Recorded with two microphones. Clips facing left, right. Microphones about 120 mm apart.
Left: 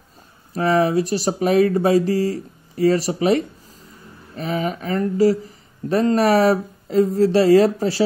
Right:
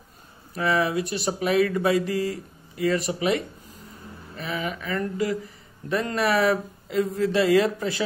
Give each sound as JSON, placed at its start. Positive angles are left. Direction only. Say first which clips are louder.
{"t": 0.6, "sound": "speech", "louder": "left 6 dB", "side_deg": 40}